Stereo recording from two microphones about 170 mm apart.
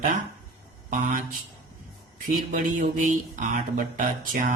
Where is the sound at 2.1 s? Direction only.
55° right (ahead or behind).